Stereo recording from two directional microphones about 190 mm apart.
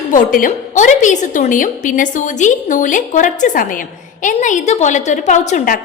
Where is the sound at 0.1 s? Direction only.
45° left (ahead or behind).